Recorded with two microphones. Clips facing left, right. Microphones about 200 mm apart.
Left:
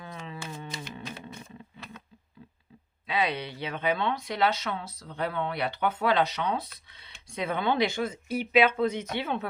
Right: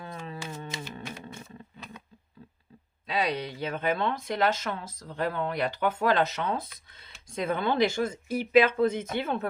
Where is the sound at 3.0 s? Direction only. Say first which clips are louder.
Even; 40° right (ahead or behind).